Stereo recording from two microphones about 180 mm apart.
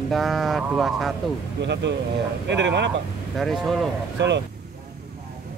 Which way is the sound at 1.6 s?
75° right (ahead or behind).